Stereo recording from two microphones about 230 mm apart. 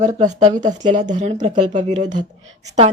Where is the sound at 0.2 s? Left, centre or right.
Right.